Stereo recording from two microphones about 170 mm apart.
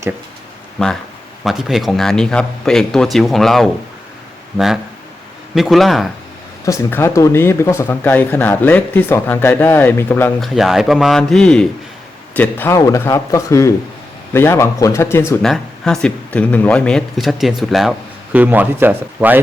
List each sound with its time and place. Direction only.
0.8 s speech: 5° left (ahead or behind)
6.7 s speech: 15° left (ahead or behind)
10.4 s speech: centre (ahead or behind); by 15.2 s 15° left (ahead or behind)
15.4 s speech: centre (ahead or behind)